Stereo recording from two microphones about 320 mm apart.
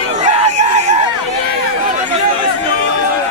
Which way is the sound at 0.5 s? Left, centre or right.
Right.